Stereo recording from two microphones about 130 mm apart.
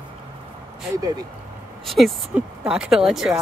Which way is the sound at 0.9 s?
30° right (ahead or behind).